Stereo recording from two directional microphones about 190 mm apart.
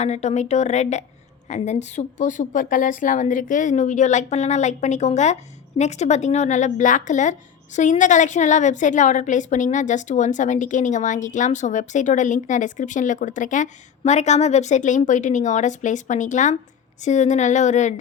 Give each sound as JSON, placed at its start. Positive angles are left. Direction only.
{"t": 0.0, "sound": "a woman's voice", "side_deg": 35}